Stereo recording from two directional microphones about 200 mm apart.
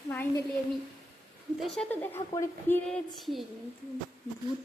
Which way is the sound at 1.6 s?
Centre (ahead or behind).